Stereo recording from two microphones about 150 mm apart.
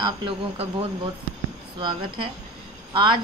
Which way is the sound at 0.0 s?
35° right (ahead or behind).